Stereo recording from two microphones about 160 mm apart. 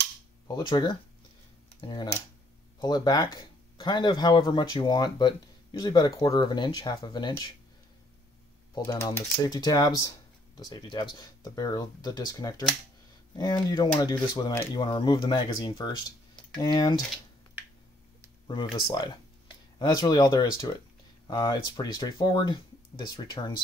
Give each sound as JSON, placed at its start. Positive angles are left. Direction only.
{"t": 0.5, "sound": "speech", "side_deg": 25}
{"t": 8.9, "sound": "speech", "side_deg": 20}
{"t": 18.9, "sound": "speech", "side_deg": 30}